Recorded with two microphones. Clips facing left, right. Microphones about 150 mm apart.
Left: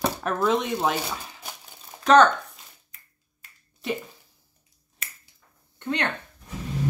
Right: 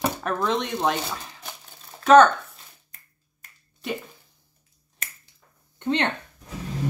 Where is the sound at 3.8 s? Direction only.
Centre (ahead or behind).